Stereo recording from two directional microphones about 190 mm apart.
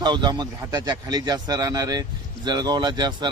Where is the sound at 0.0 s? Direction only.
25° right (ahead or behind).